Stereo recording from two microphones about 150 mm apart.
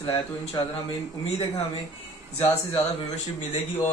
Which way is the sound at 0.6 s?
25° left (ahead or behind).